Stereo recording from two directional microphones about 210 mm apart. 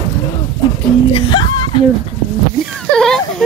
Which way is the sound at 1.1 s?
25° left (ahead or behind).